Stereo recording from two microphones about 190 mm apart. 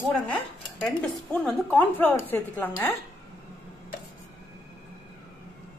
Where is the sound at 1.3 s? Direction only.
10° left (ahead or behind).